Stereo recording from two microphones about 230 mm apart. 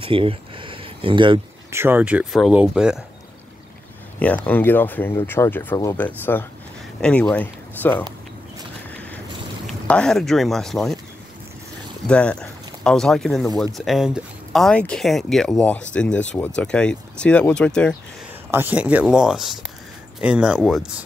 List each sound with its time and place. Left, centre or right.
0.0 s a sound: right
1.8 s speech: centre
4.2 s speech: centre
9.7 s speech: centre
12.1 s speech: centre
18.5 s speech: centre